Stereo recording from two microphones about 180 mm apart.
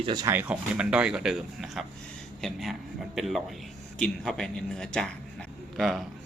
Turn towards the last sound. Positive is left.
turn(degrees=0)  # may be behind; listen again after turning